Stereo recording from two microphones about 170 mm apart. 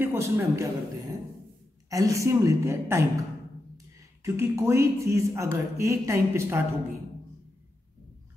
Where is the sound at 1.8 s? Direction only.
20° right (ahead or behind).